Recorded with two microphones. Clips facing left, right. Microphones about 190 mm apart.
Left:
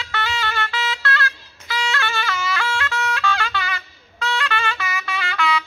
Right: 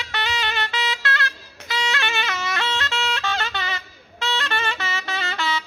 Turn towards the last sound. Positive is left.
turn(degrees=-25)  # may be behind; listen again after turning